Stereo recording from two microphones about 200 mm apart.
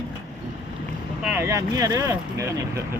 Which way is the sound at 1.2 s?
10° right (ahead or behind).